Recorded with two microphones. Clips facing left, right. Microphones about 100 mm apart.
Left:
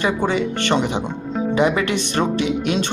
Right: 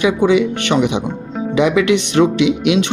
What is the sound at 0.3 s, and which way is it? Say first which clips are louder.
Speech: right 5 dB; 70° right (ahead or behind).